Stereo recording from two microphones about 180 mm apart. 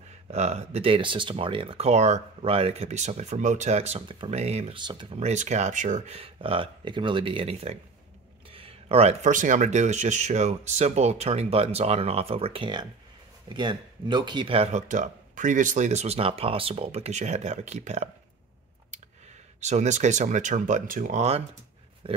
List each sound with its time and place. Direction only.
0.3 s speech: 40° right (ahead or behind)
19.6 s speech: 40° right (ahead or behind)
22.0 s a sound: 30° right (ahead or behind)